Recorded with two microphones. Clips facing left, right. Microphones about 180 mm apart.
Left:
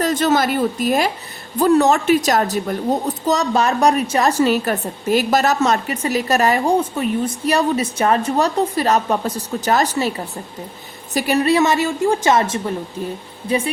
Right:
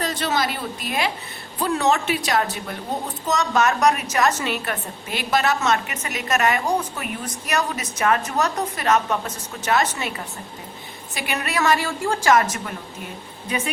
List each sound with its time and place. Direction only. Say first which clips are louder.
0.0 s a woman's voice: left 7 dB; 45° left (ahead or behind); by 12.7 s 25° left (ahead or behind)